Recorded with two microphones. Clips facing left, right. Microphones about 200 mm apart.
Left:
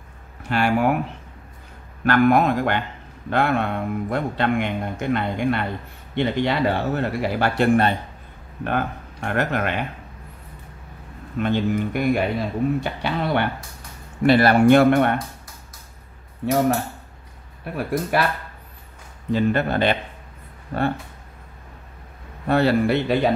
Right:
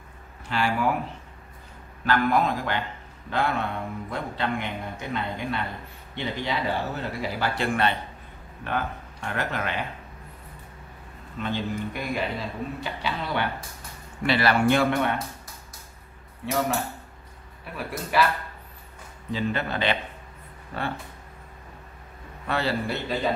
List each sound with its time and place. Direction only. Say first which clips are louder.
0.5 s a man's voice: left 5 dB; 55° left (ahead or behind)
2.0 s a man's voice: left 6 dB; 70° left (ahead or behind)
11.3 s a man's voice: left 8 dB; 60° left (ahead or behind)
16.4 s a man's voice: left 6 dB; 55° left (ahead or behind)
19.3 s speech: left 7 dB; 55° left (ahead or behind)
22.5 s a man's voice: left 9 dB; 55° left (ahead or behind)